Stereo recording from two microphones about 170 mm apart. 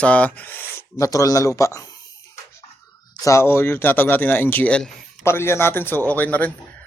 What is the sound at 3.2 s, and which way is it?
Speech, 15° left (ahead or behind).